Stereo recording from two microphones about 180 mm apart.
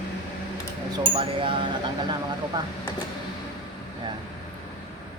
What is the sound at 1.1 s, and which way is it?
Speech, 30° right (ahead or behind).